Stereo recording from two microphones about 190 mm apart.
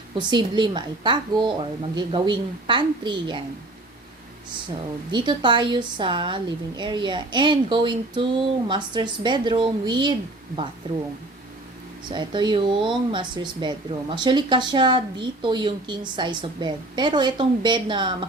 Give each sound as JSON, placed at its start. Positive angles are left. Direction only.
{"t": 0.2, "sound": "speech", "side_deg": -25}
{"t": 5.1, "sound": "speech", "side_deg": -25}
{"t": 12.0, "sound": "speech", "side_deg": -25}